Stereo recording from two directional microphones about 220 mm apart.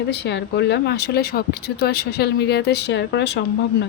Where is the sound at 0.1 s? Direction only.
50° left (ahead or behind).